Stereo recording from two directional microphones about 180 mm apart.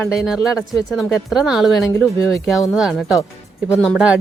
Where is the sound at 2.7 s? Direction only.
Centre (ahead or behind).